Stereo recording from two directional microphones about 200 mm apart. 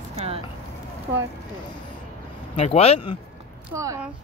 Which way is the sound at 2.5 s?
30° left (ahead or behind).